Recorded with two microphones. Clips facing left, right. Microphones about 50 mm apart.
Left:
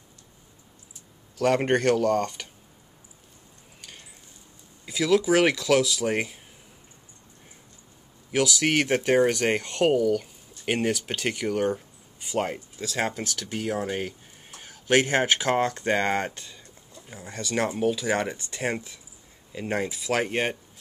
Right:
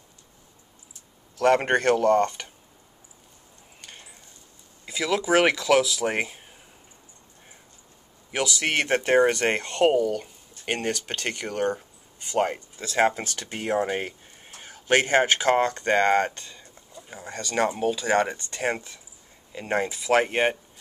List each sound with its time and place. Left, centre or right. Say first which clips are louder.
1.4 s speech: right 2 dB; centre
4.9 s speech: left 1 dB; centre
5.9 s speech: even; centre
8.5 s speech: right 1 dB; centre
12.9 s speech: right 6 dB; centre
14.5 s speech: even; centre
17.6 s speech: right 1 dB; centre
19.5 s speech: right 2 dB; centre
20.1 s speech: right 5 dB; centre